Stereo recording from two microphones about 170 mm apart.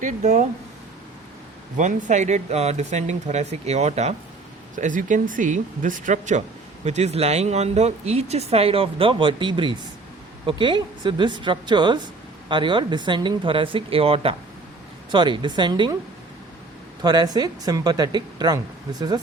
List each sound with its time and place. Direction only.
0.0 s speech: 45° right (ahead or behind)
1.7 s speech: 45° right (ahead or behind); by 16.0 s 25° right (ahead or behind)
17.0 s speech: 25° right (ahead or behind)